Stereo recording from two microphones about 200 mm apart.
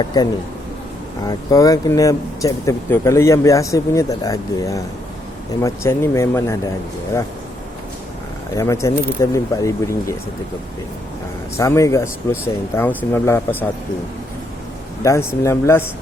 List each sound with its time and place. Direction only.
0.0 s speech: 20° left (ahead or behind)
8.5 s speech: 15° left (ahead or behind)
11.5 s speech: 15° left (ahead or behind)
15.0 s speech: 15° left (ahead or behind)